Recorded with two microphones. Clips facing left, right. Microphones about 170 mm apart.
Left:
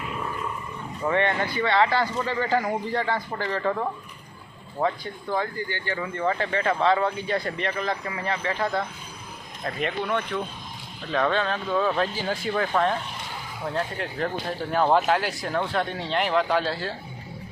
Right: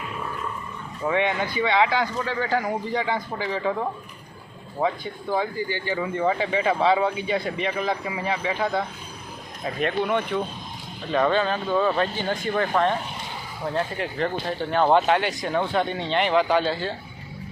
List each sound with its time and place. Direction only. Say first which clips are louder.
1.0 s speech: even; 5° right (ahead or behind)
10.0 s speech: right 4 dB; 15° right (ahead or behind)
11.1 s speech: right 3 dB; centre (ahead or behind)